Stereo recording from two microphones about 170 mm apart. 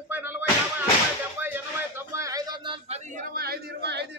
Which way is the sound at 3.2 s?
60° right (ahead or behind).